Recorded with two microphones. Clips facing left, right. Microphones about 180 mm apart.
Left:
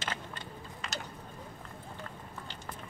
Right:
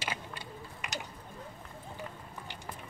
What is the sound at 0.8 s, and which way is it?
Mechanisms, 15° right (ahead or behind).